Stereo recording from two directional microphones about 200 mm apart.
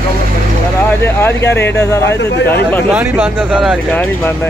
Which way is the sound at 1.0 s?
10° left (ahead or behind).